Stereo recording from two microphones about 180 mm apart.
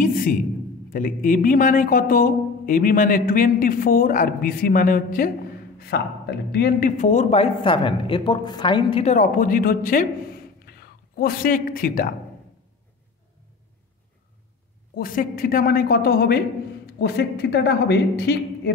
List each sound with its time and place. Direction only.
0.0 s a sound: 50° left (ahead or behind)
0.8 s a man's voice: 50° left (ahead or behind); by 9.1 s 30° left (ahead or behind)
9.1 s a man's voice: 50° left (ahead or behind)
15.0 s a man's voice: 50° left (ahead or behind)